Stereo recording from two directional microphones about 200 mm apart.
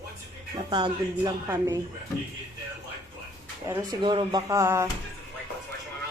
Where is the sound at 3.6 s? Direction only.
20° right (ahead or behind).